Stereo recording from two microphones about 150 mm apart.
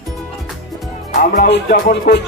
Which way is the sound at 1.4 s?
90° left.